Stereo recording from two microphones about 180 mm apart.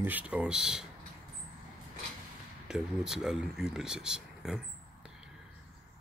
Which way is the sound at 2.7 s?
5° right (ahead or behind).